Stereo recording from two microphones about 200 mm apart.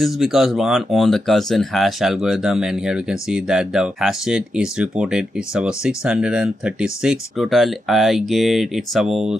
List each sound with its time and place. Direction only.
0.0 s speech: centre (ahead or behind)